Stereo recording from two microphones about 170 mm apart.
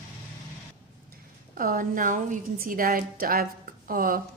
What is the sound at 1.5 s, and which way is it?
A woman's voice, 55° right (ahead or behind).